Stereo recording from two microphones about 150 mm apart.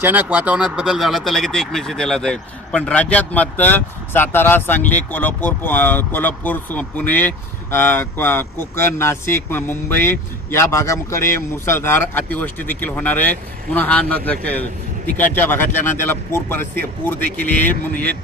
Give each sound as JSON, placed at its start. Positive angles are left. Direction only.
{"t": 0.0, "sound": "speech", "side_deg": -10}